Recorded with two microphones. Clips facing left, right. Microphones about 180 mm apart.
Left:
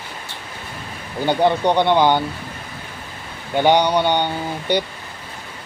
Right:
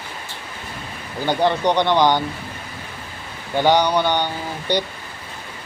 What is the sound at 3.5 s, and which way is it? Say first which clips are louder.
Speech: left 1 dB; 15° left (ahead or behind).